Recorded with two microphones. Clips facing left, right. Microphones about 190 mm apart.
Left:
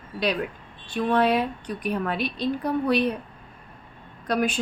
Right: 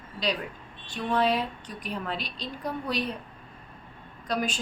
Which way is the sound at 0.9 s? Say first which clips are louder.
Left 4 dB; 60° left (ahead or behind).